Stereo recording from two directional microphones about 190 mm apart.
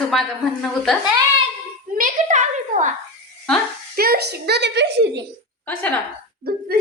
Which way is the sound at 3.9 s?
55° right (ahead or behind).